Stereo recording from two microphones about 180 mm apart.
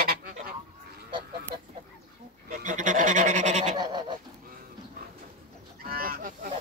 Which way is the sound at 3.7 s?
20° right (ahead or behind).